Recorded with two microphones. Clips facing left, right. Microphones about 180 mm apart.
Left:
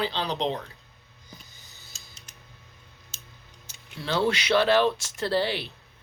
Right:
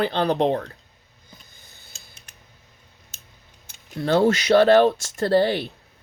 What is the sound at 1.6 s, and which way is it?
Mechanisms, 55° right (ahead or behind).